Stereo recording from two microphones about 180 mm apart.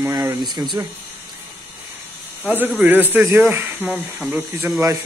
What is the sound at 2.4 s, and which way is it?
Speech, 10° right (ahead or behind).